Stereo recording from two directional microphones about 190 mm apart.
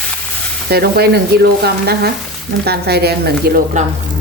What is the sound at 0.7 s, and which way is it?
Speech, 55° right (ahead or behind).